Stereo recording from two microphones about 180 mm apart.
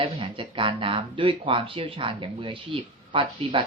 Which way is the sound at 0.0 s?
30° right (ahead or behind).